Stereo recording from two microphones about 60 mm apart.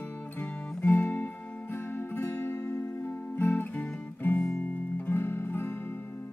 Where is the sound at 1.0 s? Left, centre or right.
Left.